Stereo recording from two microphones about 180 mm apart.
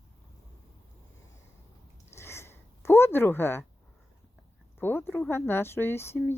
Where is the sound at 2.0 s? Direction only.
15° left (ahead or behind).